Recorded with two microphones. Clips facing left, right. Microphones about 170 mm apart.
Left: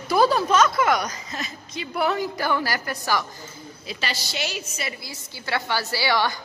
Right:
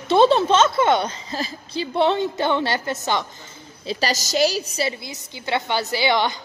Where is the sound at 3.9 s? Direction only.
40° right (ahead or behind).